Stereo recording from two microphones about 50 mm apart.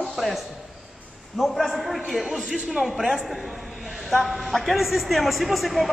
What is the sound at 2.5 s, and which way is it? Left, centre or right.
Speech, centre.